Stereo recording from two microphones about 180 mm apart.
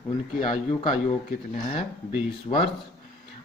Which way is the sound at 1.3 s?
40° left (ahead or behind).